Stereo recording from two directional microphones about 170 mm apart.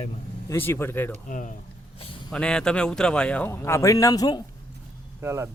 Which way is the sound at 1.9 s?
35° left (ahead or behind).